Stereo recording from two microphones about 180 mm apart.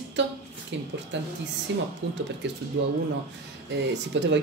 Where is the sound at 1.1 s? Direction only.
80° right.